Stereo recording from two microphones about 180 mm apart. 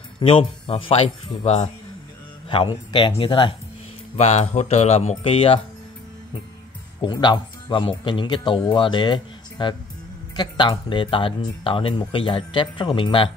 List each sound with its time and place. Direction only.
0.2 s speech: 30° left (ahead or behind)
4.2 s speech: 40° left (ahead or behind)
7.0 s speech: 25° left (ahead or behind)